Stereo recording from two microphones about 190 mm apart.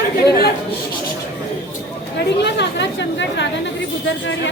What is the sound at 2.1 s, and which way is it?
A woman's voice, 65° left (ahead or behind).